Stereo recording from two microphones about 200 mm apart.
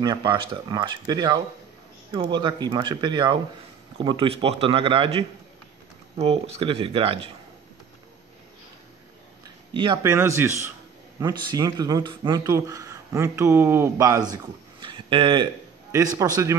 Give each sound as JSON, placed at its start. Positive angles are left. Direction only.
{"t": 0.0, "sound": "speech", "side_deg": -20}
{"t": 9.8, "sound": "speech", "side_deg": -20}